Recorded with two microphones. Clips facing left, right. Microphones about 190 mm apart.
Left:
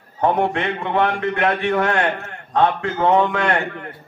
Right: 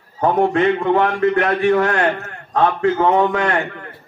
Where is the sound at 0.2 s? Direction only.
40° right (ahead or behind).